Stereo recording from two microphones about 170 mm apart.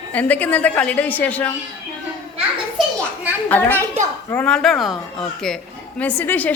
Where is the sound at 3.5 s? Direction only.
10° left (ahead or behind).